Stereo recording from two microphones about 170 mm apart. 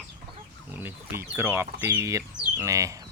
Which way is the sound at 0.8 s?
10° right (ahead or behind).